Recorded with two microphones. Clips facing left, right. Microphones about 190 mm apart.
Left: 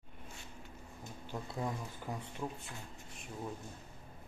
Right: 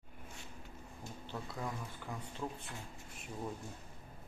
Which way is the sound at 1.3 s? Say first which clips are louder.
Left 3 dB; 20° left (ahead or behind).